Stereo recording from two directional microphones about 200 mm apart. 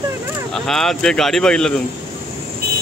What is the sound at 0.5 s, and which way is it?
Speech, centre (ahead or behind).